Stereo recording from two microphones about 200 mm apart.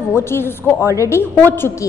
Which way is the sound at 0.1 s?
10° left (ahead or behind).